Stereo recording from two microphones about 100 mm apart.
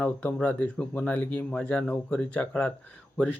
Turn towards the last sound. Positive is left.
turn(degrees=15)  # may be behind; listen again after turning